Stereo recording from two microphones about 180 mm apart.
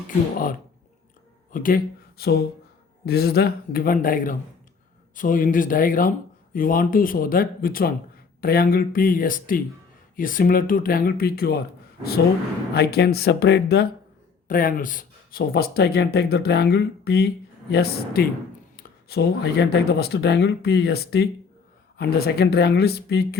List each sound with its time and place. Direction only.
1.5 s speech: 50° left (ahead or behind)
12.7 s speech: 60° left (ahead or behind)
14.4 s speech: 50° left (ahead or behind)